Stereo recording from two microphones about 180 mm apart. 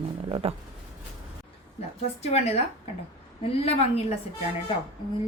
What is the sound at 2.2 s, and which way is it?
A woman's voice, 35° left (ahead or behind).